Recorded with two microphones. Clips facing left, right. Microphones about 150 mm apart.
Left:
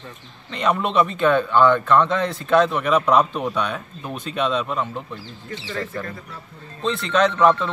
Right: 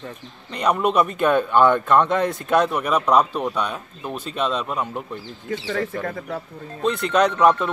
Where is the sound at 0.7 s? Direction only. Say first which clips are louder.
Right 1 dB; 5° right (ahead or behind).